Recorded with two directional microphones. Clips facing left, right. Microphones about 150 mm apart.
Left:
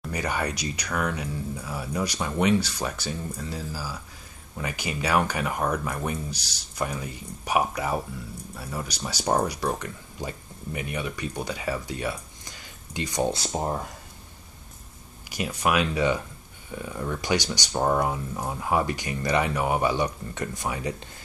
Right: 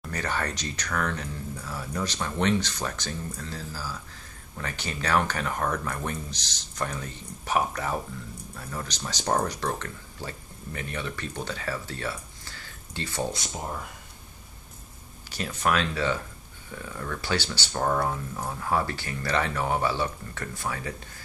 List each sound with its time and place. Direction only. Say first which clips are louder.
0.1 s speech: left 2 dB; 10° left (ahead or behind)
13.3 s speech: left 6 dB; 35° left (ahead or behind)
15.3 s speech: left 2 dB; 10° left (ahead or behind)